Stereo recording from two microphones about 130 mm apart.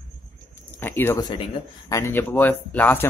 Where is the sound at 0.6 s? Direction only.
15° left (ahead or behind).